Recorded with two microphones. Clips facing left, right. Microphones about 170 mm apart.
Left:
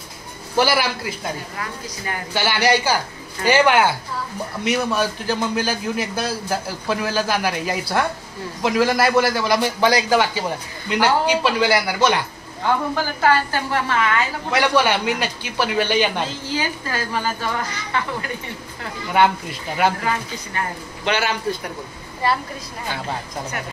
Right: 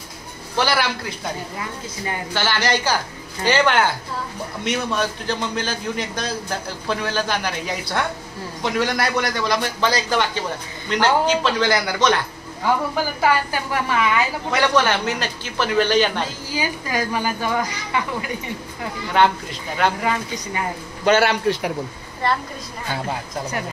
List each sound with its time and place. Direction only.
0.6 s a man's voice: 5° left (ahead or behind)
2.3 s a man's voice: 10° left (ahead or behind)
12.6 s a woman's voice: 10° right (ahead or behind)
14.5 s a man's voice: 10° left (ahead or behind)
16.4 s a woman's voice: 10° right (ahead or behind)
19.2 s a man's voice: 10° left (ahead or behind)
21.2 s a man's voice: 75° right (ahead or behind)